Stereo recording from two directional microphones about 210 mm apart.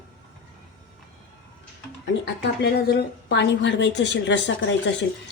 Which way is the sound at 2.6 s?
50° left (ahead or behind).